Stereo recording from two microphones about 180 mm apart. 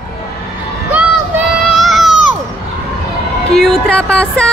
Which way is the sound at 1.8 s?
Centre (ahead or behind).